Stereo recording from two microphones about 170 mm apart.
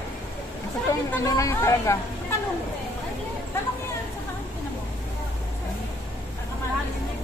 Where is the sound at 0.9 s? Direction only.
20° left (ahead or behind).